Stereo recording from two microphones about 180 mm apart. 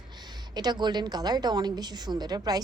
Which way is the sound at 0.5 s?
25° right (ahead or behind).